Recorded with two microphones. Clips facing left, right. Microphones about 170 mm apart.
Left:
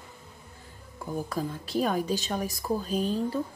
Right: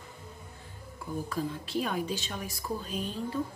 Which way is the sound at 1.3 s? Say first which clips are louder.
Even; 40° left (ahead or behind).